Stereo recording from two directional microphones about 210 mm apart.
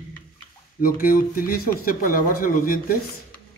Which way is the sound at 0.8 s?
40° left (ahead or behind).